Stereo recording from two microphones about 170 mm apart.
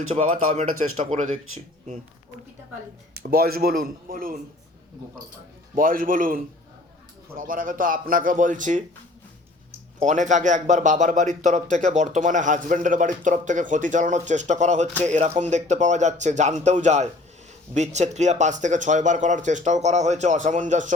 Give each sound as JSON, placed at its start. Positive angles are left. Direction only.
{"t": 0.2, "sound": "speech", "side_deg": -45}
{"t": 3.2, "sound": "speech", "side_deg": -65}
{"t": 5.7, "sound": "speech", "side_deg": -55}
{"t": 10.0, "sound": "speech", "side_deg": -45}